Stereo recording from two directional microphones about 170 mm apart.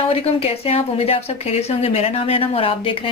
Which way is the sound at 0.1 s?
35° left (ahead or behind).